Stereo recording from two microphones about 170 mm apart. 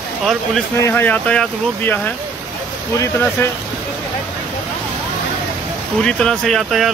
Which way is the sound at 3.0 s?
15° left (ahead or behind).